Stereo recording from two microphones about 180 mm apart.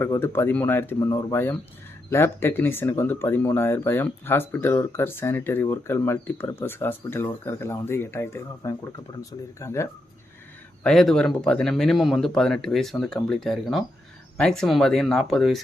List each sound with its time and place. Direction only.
0.0 s speech: 15° left (ahead or behind)
10.8 s speech: centre (ahead or behind)